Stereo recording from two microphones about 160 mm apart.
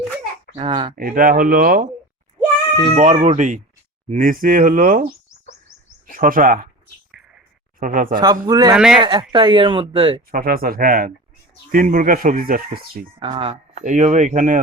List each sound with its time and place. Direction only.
0.5 s speech: 35° right (ahead or behind)
0.9 s speech: 60° right (ahead or behind)
2.9 s speech: 45° right (ahead or behind)
4.1 s speech: 60° right (ahead or behind)
6.1 s speech: 60° right (ahead or behind)
7.8 s speech: 60° right (ahead or behind)
8.2 s speech: 25° right (ahead or behind)
8.7 s speech: 5° right (ahead or behind)
9.0 s speech: 30° right (ahead or behind)
10.3 s speech: 65° right (ahead or behind)
13.1 s speech: 30° right (ahead or behind); by 14.6 s 50° right (ahead or behind)